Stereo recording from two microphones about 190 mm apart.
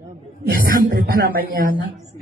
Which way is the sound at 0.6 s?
50° right (ahead or behind).